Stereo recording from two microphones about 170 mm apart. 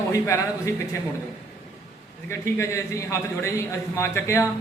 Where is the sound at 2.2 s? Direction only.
15° left (ahead or behind).